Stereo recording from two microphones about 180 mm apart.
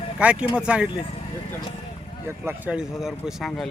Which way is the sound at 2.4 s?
10° right (ahead or behind).